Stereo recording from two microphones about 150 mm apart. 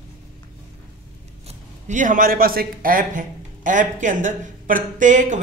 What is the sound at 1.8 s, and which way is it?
A man's voice, 55° right (ahead or behind).